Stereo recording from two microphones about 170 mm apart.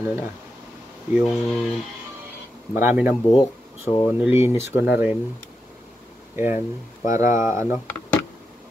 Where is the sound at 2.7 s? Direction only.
15° right (ahead or behind).